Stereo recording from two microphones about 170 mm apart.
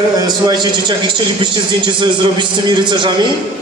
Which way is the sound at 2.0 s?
25° right (ahead or behind).